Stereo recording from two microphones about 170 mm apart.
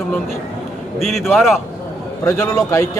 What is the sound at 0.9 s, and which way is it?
Speech, centre (ahead or behind).